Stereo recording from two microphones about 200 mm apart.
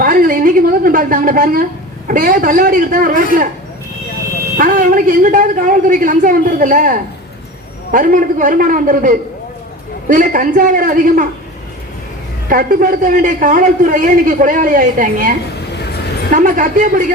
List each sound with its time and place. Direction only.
0.0 s a woman's voice: 45° right (ahead or behind)
4.5 s a woman's voice: 40° right (ahead or behind)
12.5 s a man's voice: 45° right (ahead or behind)